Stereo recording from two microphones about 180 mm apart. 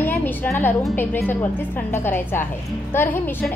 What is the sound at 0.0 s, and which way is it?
Music, 10° left (ahead or behind).